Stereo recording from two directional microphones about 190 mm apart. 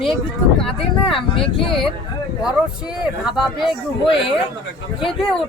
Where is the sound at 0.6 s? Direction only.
Centre (ahead or behind).